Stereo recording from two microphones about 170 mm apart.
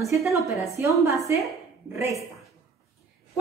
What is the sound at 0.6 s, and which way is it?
A woman's voice, 15° right (ahead or behind).